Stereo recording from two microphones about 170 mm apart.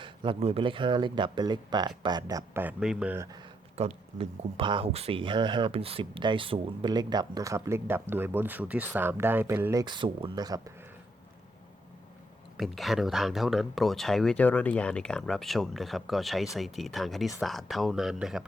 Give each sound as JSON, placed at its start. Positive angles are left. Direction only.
{"t": 0.0, "sound": "speech", "side_deg": -30}
{"t": 3.8, "sound": "speech", "side_deg": -35}
{"t": 9.8, "sound": "speech", "side_deg": -25}
{"t": 12.5, "sound": "speech", "side_deg": 0}